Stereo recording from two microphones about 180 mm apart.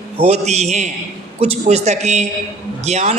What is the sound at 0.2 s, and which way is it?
A woman's voice, 40° right (ahead or behind).